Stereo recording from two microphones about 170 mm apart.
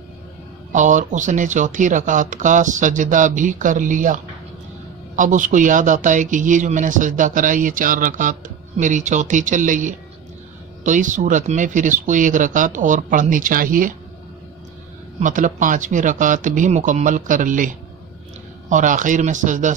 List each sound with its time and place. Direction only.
0.7 s a man's voice: 45° right (ahead or behind)
15.1 s a man's voice: 50° right (ahead or behind)